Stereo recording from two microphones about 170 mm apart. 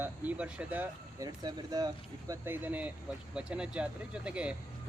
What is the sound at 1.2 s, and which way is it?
Speech, 25° right (ahead or behind).